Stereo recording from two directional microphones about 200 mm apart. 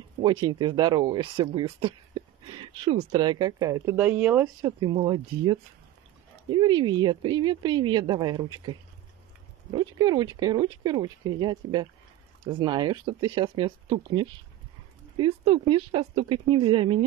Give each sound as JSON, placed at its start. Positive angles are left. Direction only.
{"t": 0.2, "sound": "speech", "side_deg": -25}
{"t": 4.6, "sound": "speech", "side_deg": -20}
{"t": 15.1, "sound": "speech", "side_deg": -25}